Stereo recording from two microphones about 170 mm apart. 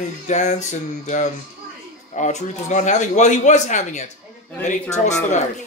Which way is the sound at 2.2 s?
45° left (ahead or behind).